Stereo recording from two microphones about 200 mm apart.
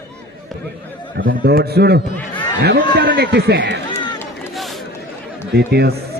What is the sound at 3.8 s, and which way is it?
Run, 20° left (ahead or behind).